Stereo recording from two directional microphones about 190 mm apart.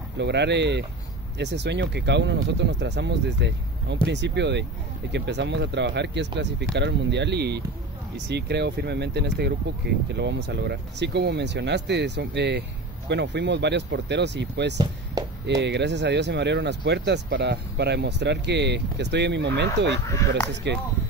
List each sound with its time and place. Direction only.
0.2 s speech: 65° right (ahead or behind)
20.1 s speech: 15° left (ahead or behind)
20.7 s speech: 65° right (ahead or behind)